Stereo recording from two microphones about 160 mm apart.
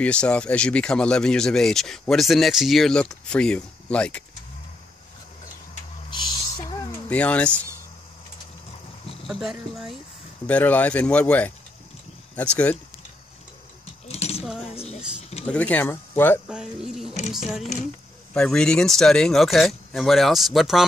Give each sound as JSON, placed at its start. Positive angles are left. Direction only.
{"t": 0.0, "sound": "speech", "side_deg": 5}
{"t": 6.0, "sound": "a sound", "side_deg": 30}
{"t": 7.1, "sound": "speech", "side_deg": 10}
{"t": 9.3, "sound": "speech", "side_deg": -5}
{"t": 10.4, "sound": "speech", "side_deg": 10}
{"t": 14.0, "sound": "a sound", "side_deg": 40}
{"t": 15.4, "sound": "speech", "side_deg": 10}
{"t": 16.4, "sound": "speech", "side_deg": -5}
{"t": 18.3, "sound": "speech", "side_deg": 5}